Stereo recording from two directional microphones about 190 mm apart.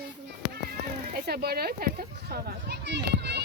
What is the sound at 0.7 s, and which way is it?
Cat, 55° right (ahead or behind).